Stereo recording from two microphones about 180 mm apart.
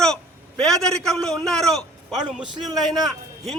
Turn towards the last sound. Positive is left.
turn(degrees=0)  # may be behind; listen again after turning